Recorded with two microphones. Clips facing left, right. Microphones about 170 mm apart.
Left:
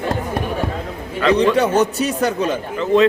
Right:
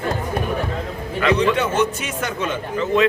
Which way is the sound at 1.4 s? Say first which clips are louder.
Left 4 dB; 35° left (ahead or behind).